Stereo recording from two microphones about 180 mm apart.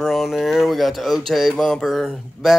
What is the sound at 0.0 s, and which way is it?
Speech, centre (ahead or behind).